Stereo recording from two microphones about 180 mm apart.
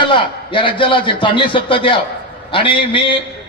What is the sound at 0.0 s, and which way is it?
A man's voice, 25° left (ahead or behind).